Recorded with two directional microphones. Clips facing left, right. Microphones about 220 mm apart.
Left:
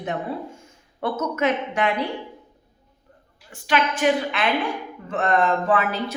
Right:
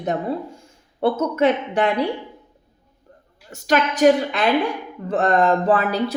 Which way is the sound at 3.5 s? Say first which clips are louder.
Right 3 dB; 40° right (ahead or behind).